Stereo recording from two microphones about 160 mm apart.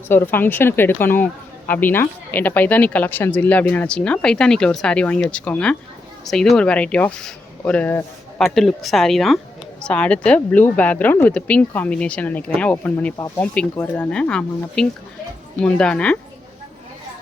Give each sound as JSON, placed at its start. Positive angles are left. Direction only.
{"t": 0.1, "sound": "a woman's voice", "side_deg": 15}